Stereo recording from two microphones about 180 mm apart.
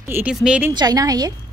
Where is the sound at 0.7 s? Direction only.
20° right (ahead or behind).